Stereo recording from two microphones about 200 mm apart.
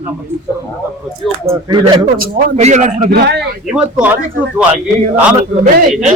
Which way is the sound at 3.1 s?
55° right (ahead or behind).